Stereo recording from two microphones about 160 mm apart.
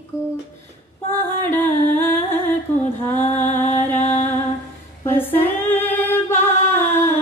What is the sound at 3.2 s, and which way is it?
Music, 45° left (ahead or behind).